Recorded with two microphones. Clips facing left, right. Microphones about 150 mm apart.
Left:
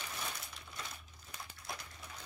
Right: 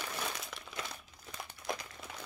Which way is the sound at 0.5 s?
85° right.